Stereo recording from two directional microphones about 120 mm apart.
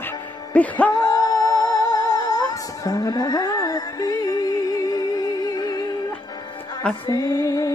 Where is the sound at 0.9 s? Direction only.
35° left (ahead or behind).